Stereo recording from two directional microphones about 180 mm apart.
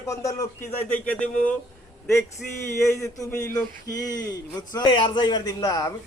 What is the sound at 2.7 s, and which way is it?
A man's voice, 15° left (ahead or behind).